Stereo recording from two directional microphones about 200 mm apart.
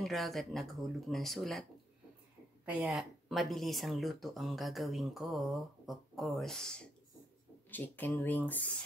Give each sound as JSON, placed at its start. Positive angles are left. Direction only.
{"t": 0.0, "sound": "speech", "side_deg": 0}